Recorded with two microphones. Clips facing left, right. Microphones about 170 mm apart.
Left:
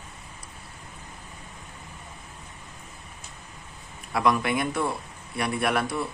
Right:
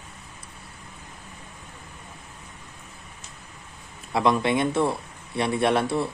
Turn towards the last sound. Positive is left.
turn(degrees=-25)  # may be behind; listen again after turning